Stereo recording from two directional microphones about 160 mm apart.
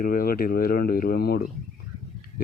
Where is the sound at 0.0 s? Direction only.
65° left (ahead or behind).